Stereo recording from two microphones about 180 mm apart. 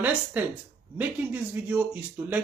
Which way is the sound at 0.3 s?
10° right (ahead or behind).